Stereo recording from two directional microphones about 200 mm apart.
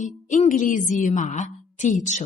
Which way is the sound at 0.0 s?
40° left (ahead or behind).